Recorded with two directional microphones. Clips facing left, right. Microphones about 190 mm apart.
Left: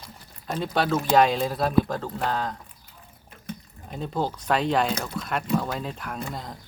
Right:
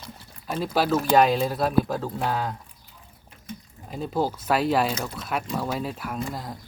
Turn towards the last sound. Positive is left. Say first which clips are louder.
# right 2 dB
turn(degrees=0)  # may be behind; listen again after turning